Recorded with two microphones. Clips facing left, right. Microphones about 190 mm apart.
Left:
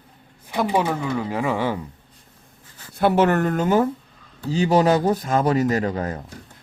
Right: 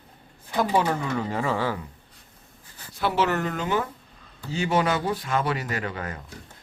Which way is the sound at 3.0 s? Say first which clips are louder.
Left 6 dB; 55° left (ahead or behind).